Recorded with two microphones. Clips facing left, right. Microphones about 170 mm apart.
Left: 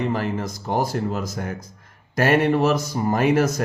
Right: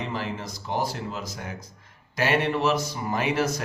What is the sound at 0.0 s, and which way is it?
Speech, 50° left (ahead or behind).